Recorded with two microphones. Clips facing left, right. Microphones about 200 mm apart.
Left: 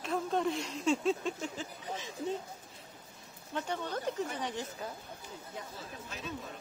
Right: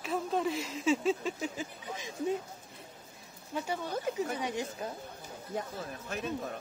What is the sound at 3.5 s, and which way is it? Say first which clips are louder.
Speech: right 1 dB; 10° right (ahead or behind).